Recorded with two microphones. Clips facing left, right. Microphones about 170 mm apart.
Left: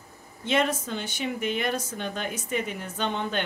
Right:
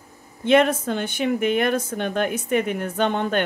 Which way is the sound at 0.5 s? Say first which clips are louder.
Right 8 dB; 55° right (ahead or behind).